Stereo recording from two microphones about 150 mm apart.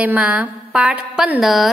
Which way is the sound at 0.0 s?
10° right (ahead or behind).